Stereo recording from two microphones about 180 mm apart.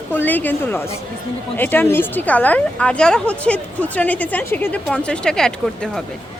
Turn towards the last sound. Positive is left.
turn(degrees=5)  # may be behind; listen again after turning